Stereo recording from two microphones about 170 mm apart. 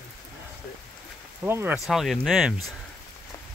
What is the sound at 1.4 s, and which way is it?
Speech, 10° right (ahead or behind).